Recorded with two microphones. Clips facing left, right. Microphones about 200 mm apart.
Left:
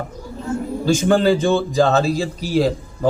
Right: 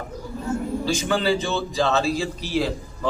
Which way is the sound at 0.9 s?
45° left (ahead or behind).